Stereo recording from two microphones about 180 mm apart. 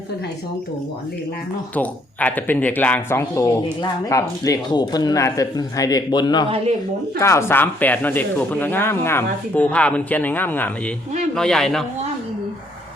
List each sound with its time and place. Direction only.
1.7 s a man's voice: 10° left (ahead or behind)